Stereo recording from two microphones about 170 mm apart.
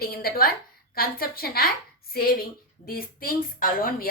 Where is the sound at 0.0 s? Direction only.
60° left (ahead or behind).